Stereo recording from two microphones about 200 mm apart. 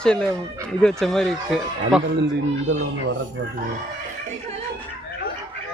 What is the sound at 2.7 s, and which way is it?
Speech, 80° right.